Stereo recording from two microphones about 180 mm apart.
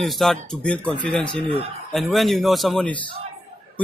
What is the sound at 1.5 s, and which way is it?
Speech, 30° right (ahead or behind).